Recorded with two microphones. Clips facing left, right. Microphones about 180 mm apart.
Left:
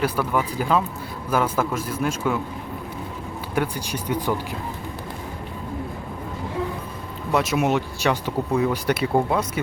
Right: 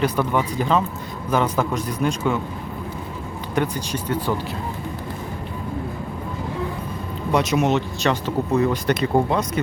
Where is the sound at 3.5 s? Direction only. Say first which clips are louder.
Right 2 dB; 10° left (ahead or behind).